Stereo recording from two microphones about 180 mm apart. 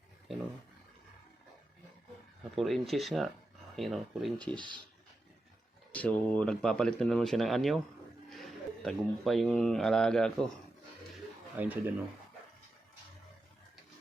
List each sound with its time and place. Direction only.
2.6 s speech: centre (ahead or behind)
4.5 s speech: 25° right (ahead or behind)
5.9 s speech: 10° left (ahead or behind)
11.5 s speech: 10° right (ahead or behind)